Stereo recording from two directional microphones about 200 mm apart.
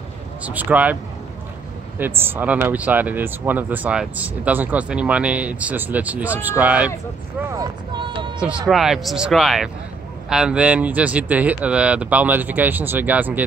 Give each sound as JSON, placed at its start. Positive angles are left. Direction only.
{"t": 0.4, "sound": "speech", "side_deg": -10}
{"t": 2.0, "sound": "speech", "side_deg": -10}
{"t": 7.5, "sound": "speech", "side_deg": -20}
{"t": 8.4, "sound": "speech", "side_deg": -5}